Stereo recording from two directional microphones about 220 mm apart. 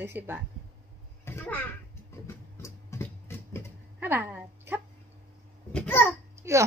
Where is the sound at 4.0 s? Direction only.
10° right (ahead or behind).